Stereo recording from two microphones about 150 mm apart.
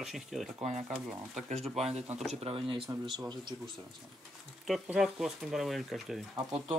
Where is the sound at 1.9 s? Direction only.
45° right (ahead or behind); by 3.5 s 30° right (ahead or behind).